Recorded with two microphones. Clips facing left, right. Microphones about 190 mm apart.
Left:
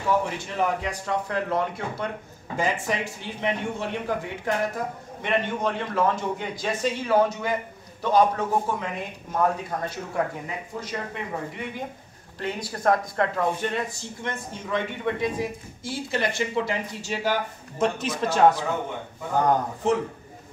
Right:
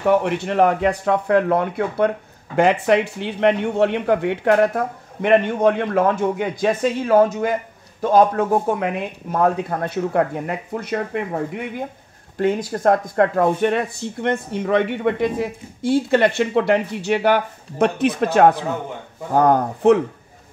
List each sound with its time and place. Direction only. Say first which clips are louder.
0.0 s speech: right 7 dB; 65° right (ahead or behind)
12.4 s speech: right 11 dB; 45° right (ahead or behind)